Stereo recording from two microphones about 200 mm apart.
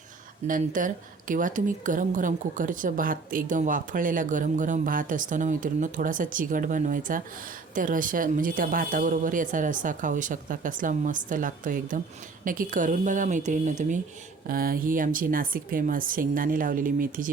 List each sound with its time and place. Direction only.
0.4 s a woman's voice: 40° right (ahead or behind)